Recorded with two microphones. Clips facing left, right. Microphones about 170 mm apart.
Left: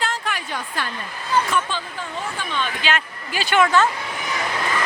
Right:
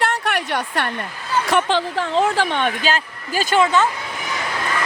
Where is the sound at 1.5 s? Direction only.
80° right.